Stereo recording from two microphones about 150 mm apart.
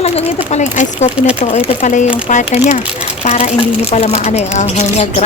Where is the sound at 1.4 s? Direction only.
40° left (ahead or behind).